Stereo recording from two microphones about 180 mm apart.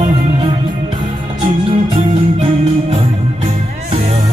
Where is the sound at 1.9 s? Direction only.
35° right (ahead or behind).